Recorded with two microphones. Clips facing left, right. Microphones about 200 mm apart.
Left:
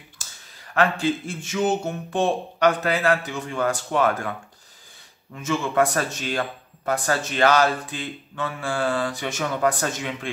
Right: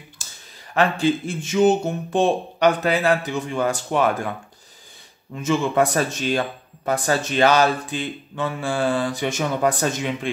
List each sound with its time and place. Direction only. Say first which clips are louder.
0.7 s a man's voice: right 2 dB; 20° right (ahead or behind)
5.3 s speech: right 4 dB; 20° right (ahead or behind)